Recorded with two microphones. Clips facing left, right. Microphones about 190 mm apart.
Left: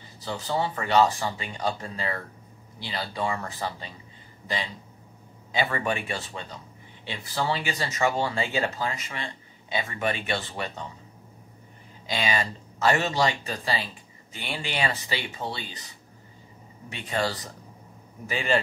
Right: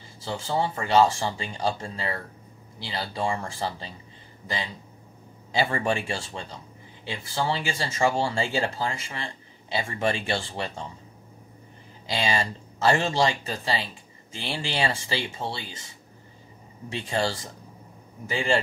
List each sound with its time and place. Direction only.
0.2 s speech: 25° right (ahead or behind)
5.5 s speech: 30° right (ahead or behind)
12.1 s speech: 30° right (ahead or behind)
16.9 s speech: 30° right (ahead or behind)